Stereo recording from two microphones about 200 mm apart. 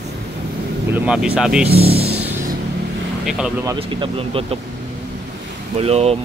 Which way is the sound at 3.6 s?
25° right (ahead or behind).